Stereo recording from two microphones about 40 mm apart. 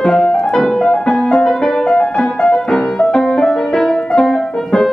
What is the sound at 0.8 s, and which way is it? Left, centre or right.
Music, centre.